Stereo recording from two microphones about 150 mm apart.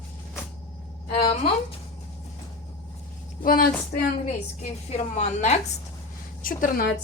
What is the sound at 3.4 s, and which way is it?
Speech, 70° left (ahead or behind).